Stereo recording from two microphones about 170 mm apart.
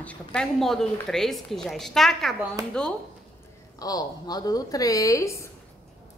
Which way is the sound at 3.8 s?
20° left (ahead or behind).